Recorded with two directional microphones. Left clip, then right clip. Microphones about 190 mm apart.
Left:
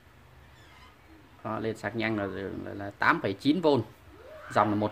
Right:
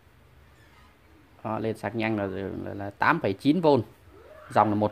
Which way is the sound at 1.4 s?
25° right (ahead or behind).